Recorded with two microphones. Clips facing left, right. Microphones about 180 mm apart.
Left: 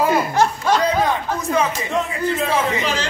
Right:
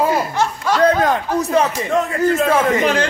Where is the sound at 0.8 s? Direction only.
45° right (ahead or behind).